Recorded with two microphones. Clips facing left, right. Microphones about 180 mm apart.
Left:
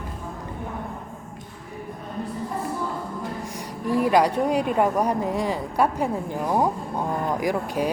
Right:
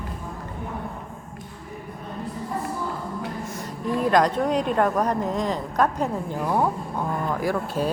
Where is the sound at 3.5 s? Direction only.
15° left (ahead or behind).